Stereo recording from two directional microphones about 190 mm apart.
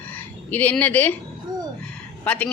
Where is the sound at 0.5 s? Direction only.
10° left (ahead or behind).